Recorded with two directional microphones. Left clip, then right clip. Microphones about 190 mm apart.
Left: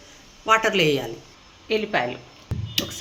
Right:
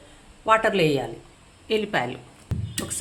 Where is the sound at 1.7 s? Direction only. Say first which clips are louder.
Left 1 dB; 50° right (ahead or behind).